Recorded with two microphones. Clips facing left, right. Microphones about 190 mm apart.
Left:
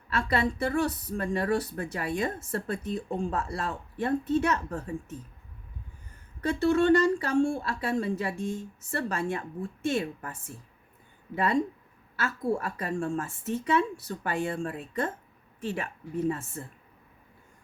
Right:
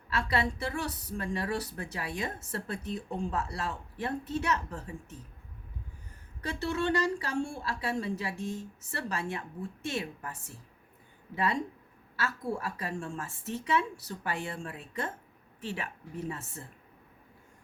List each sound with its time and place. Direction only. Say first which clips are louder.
0.1 s speech: left 3 dB; 50° left (ahead or behind)
6.4 s speech: left 8 dB; 50° left (ahead or behind)
12.1 s speech: left 5 dB; 50° left (ahead or behind)
16.3 s speech: left 7 dB; 50° left (ahead or behind)